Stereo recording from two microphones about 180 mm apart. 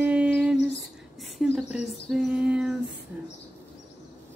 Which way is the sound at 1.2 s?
Centre (ahead or behind).